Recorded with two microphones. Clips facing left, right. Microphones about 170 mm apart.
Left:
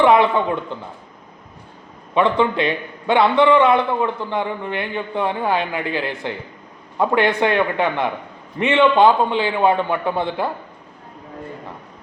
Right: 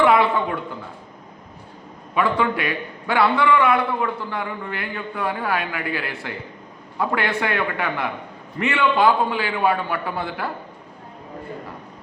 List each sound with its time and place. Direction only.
0.0 s speech: 20° left (ahead or behind)
2.1 s a man's voice: 25° left (ahead or behind)